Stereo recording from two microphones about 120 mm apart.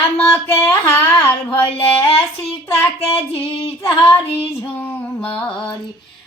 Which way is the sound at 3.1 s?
50° left (ahead or behind).